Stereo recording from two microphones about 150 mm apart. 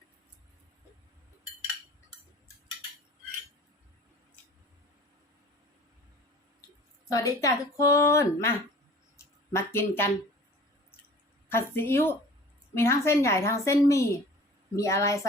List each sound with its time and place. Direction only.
7.1 s a woman's voice: 25° left (ahead or behind)
9.1 s a sound: 20° left (ahead or behind)
11.5 s a woman's voice: 15° left (ahead or behind)